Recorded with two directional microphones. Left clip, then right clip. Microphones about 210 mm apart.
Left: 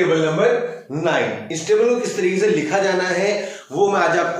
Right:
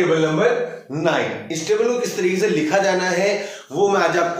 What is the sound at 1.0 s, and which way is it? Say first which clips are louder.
A man's voice: left 1 dB; 15° right (ahead or behind).